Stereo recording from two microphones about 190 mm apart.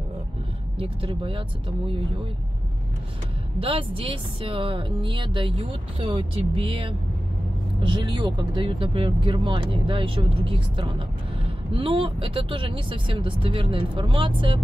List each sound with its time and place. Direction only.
0.7 s speech: 30° right (ahead or behind)
3.5 s speech: 30° right (ahead or behind)